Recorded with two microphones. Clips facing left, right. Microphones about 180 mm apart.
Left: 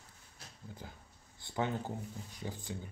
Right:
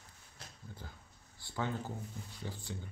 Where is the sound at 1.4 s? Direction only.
20° left (ahead or behind).